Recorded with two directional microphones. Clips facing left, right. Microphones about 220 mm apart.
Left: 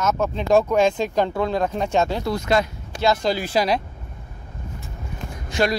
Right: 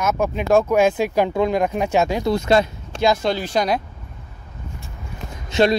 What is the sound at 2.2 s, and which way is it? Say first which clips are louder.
Speech: right 4 dB; 25° right (ahead or behind).